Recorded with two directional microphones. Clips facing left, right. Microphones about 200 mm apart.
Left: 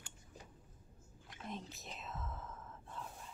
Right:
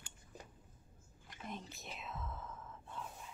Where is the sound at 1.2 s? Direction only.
Centre (ahead or behind).